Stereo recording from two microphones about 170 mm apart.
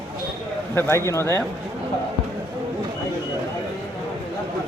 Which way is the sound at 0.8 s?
15° left (ahead or behind).